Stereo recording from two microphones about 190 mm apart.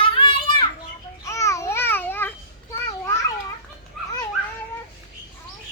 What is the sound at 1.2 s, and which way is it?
Babbling, 15° left (ahead or behind).